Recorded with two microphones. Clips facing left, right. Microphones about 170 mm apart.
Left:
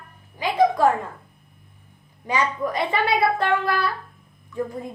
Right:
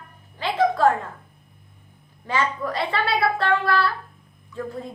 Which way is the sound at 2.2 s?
15° left (ahead or behind).